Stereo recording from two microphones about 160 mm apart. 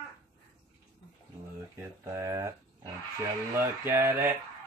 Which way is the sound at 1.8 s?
15° right (ahead or behind).